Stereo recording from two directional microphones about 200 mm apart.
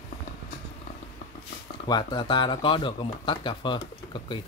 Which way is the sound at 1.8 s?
20° left (ahead or behind).